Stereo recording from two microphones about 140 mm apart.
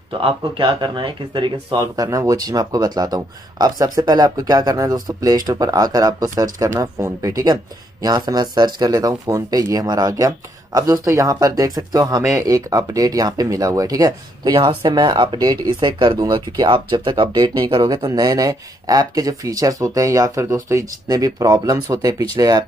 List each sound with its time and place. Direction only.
0.2 s speech: 35° right (ahead or behind)